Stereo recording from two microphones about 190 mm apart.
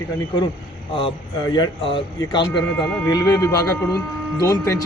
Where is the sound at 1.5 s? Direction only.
25° left (ahead or behind).